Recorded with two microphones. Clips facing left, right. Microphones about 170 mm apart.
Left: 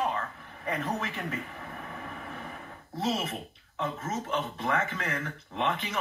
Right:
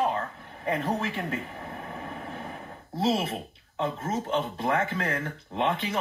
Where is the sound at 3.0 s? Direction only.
30° right (ahead or behind).